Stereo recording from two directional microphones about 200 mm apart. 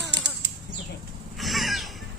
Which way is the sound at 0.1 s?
65° right (ahead or behind).